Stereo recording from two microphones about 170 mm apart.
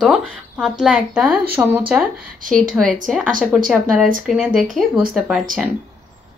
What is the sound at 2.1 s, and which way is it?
Speech, 50° right (ahead or behind).